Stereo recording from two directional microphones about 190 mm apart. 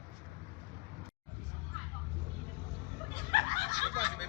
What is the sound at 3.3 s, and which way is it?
Snicker, 25° left (ahead or behind).